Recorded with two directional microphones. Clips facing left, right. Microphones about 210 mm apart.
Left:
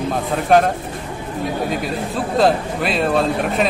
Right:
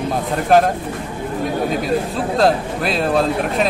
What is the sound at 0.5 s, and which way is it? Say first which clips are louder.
Speech: right 1 dB; centre (ahead or behind).